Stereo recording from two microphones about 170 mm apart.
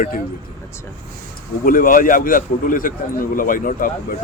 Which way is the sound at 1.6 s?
55° left (ahead or behind).